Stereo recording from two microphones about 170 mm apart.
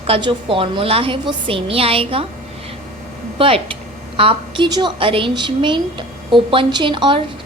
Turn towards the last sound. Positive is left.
turn(degrees=-30)  # may be behind; listen again after turning